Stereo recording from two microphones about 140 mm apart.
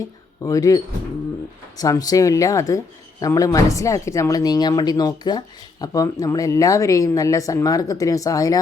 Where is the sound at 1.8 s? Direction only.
25° left (ahead or behind).